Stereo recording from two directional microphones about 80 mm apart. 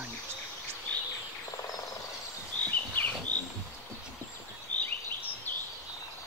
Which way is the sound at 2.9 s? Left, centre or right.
Centre.